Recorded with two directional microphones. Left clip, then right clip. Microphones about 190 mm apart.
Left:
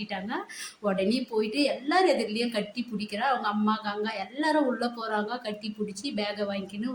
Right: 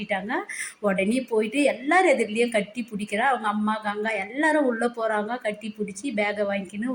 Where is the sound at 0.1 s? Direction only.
15° right (ahead or behind).